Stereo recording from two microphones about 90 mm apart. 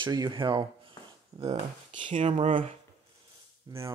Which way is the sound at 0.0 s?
55° right (ahead or behind).